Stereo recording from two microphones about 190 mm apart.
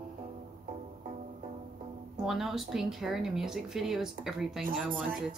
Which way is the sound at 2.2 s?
Centre (ahead or behind).